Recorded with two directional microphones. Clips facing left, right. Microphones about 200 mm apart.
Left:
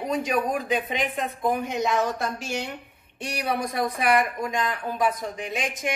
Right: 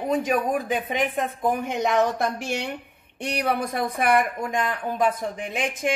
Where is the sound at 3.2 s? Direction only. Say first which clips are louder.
Right 3 dB; 55° right (ahead or behind).